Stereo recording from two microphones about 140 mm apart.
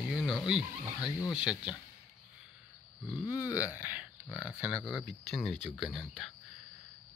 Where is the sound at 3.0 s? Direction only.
30° left (ahead or behind).